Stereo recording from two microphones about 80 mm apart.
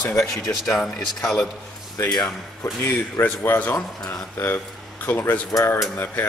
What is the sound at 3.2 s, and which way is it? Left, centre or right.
Speech, left.